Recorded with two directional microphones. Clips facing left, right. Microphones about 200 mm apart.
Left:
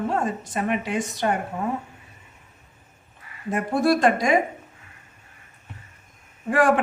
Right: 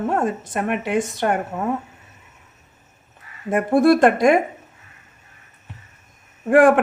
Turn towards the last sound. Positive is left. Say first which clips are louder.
# right 6 dB
turn(degrees=-55)  # may be behind; listen again after turning